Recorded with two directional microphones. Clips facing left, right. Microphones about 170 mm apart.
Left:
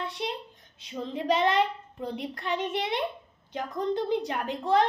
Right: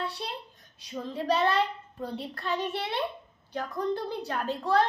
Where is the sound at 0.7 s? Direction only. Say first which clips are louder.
Left 1 dB; 20° left (ahead or behind).